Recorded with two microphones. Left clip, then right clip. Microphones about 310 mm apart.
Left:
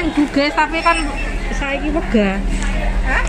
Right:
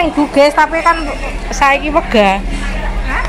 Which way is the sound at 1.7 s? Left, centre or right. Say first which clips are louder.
Right 7 dB; right.